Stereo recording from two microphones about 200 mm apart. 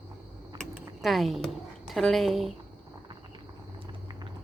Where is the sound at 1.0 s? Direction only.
Centre (ahead or behind).